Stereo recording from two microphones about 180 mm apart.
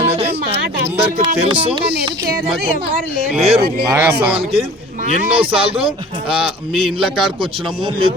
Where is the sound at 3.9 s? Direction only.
10° right (ahead or behind).